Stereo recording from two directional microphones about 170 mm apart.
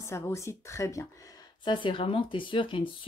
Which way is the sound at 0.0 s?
15° left (ahead or behind).